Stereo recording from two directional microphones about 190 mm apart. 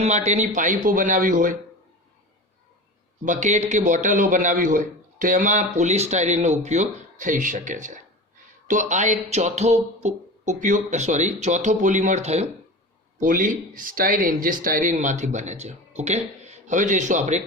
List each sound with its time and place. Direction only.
0.0 s speech: 35° right (ahead or behind)
3.2 s a man's voice: 40° right (ahead or behind)